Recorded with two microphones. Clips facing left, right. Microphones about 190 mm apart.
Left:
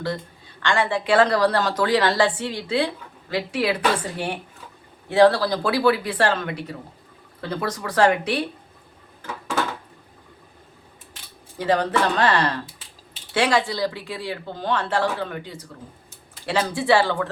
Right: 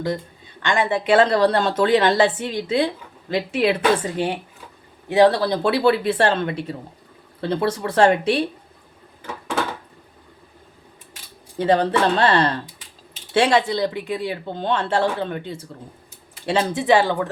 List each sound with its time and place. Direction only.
0.6 s a woman's voice: 20° right (ahead or behind)
11.5 s a woman's voice: 25° right (ahead or behind)